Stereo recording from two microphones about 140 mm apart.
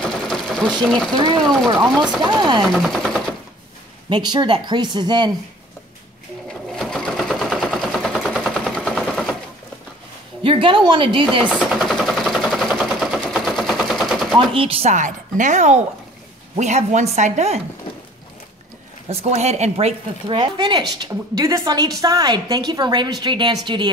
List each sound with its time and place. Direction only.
0.0 s sewing machine: 5° left (ahead or behind)
0.8 s speech: 5° left (ahead or behind)
1.8 s a woman's voice: 30° right (ahead or behind)
2.6 s speech: centre (ahead or behind)
4.1 s a woman's voice: 30° right (ahead or behind)
6.7 s sewing machine: 5° left (ahead or behind)
10.4 s a woman's voice: 40° right (ahead or behind)
11.4 s a sound: 5° right (ahead or behind)
14.3 s speech: 40° right (ahead or behind)
19.0 s speech: 50° right (ahead or behind)
20.3 s a woman's voice: 30° right (ahead or behind)